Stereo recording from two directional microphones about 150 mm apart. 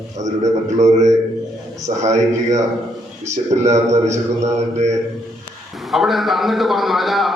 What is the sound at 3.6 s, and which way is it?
Speech, 50° right (ahead or behind).